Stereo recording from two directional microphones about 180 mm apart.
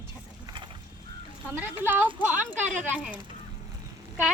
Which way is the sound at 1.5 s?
10° right (ahead or behind).